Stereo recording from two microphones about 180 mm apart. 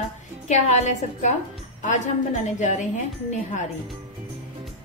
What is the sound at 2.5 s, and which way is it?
Speech, 40° left (ahead or behind).